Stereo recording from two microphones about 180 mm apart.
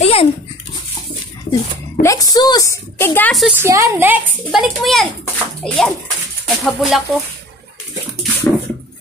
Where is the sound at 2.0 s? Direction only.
20° left (ahead or behind).